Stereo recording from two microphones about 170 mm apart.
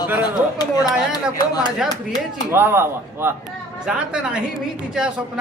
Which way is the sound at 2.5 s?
10° right (ahead or behind).